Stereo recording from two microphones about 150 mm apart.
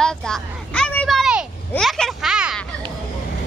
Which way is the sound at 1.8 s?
Centre (ahead or behind).